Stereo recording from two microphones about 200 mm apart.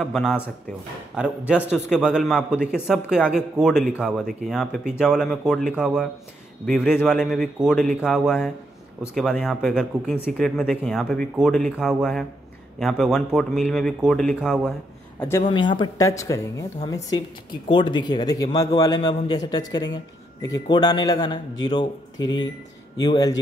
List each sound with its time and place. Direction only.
0.0 s speech: 5° left (ahead or behind)
15.1 s a man's voice: 10° left (ahead or behind)
15.4 s speech: 25° left (ahead or behind)